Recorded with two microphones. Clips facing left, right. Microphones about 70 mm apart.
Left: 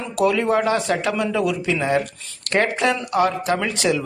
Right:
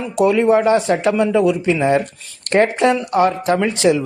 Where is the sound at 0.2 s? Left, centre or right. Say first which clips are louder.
Right 5 dB; right.